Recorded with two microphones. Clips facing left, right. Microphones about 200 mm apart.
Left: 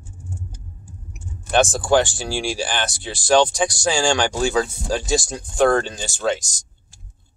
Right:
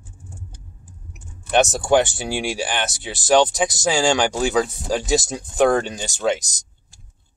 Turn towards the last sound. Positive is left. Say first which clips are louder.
# right 1 dB
turn(degrees=-20)  # may be behind; listen again after turning